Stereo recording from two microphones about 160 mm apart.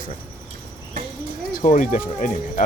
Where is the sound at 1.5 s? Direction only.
50° left (ahead or behind).